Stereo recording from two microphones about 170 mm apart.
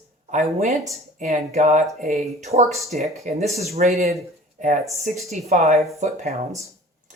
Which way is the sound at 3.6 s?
40° right (ahead or behind).